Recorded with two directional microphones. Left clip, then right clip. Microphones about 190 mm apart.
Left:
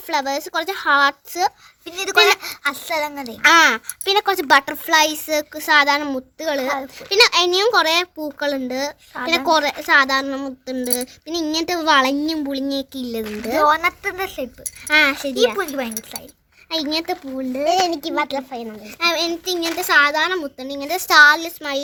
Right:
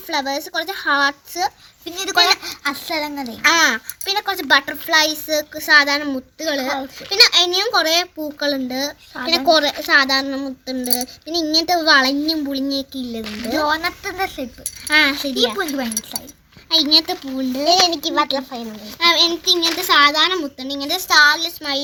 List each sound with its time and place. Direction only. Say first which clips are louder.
0.1 s a child's voice: left 1 dB; 50° left (ahead or behind); by 17.7 s 30° left (ahead or behind)
17.7 s a child's voice: right 3 dB; 10° left (ahead or behind)
18.9 s a child's voice: right 5 dB; 40° left (ahead or behind)